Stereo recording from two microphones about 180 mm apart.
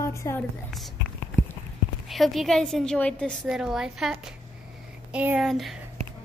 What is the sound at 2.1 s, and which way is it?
A woman's voice, centre (ahead or behind).